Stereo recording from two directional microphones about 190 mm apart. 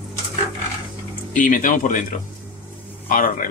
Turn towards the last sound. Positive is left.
turn(degrees=45)  # may be behind; listen again after turning